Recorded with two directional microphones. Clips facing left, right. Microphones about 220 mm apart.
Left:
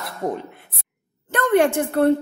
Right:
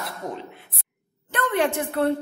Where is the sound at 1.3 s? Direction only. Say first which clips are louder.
Left 6 dB; 50° left (ahead or behind).